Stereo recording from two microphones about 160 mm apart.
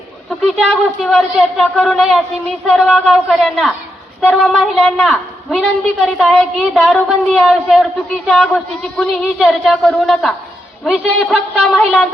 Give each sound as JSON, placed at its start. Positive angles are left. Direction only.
{"t": 0.4, "sound": "a woman's voice", "side_deg": 0}